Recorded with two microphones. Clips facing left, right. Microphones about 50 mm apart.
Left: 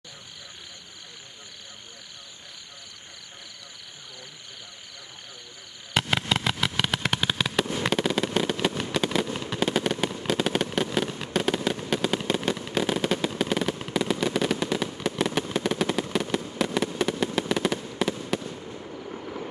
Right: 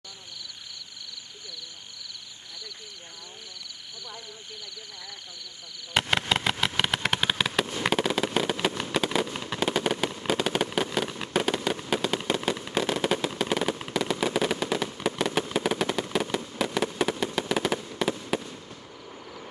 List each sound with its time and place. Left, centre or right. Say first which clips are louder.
5.9 s a sound: even; centre
6.8 s fireworks: right 1 dB; centre
18.4 s fireworks: left 5 dB; centre